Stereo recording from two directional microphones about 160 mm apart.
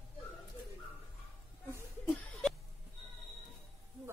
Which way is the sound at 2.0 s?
5° left (ahead or behind).